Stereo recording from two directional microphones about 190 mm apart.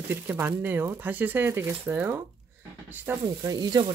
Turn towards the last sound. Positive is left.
turn(degrees=-20)  # may be behind; listen again after turning